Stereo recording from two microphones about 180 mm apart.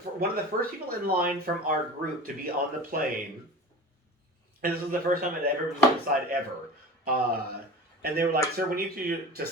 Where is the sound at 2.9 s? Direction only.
55° right (ahead or behind).